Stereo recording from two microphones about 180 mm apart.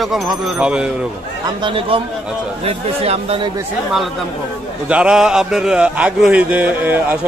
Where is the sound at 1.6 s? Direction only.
30° right (ahead or behind).